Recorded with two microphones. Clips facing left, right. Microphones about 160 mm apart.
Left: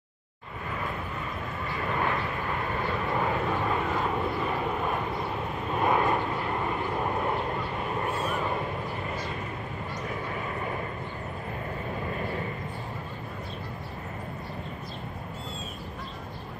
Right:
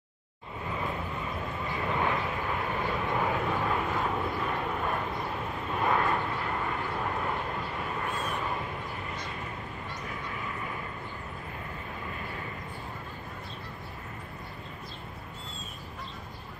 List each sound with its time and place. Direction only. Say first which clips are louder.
1.9 s vehicle: even; 5° right (ahead or behind)
5.8 s vehicle: left 3 dB; 15° left (ahead or behind)